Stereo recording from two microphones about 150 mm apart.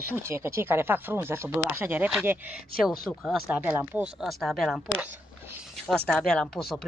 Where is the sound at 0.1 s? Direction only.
15° right (ahead or behind).